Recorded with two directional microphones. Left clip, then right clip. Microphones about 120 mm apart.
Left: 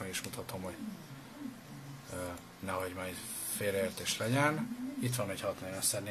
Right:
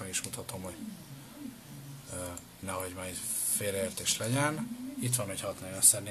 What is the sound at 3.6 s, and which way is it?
Speech, 5° right (ahead or behind).